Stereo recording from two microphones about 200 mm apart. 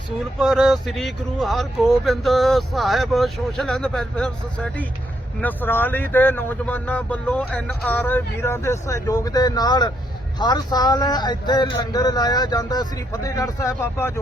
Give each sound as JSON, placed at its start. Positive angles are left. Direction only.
{"t": 0.3, "sound": "speech", "side_deg": 0}